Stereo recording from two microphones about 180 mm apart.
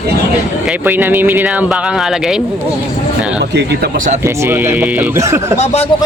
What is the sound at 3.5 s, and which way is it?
Speech, 70° right (ahead or behind).